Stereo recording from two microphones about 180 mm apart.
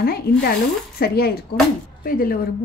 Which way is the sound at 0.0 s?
55° left (ahead or behind).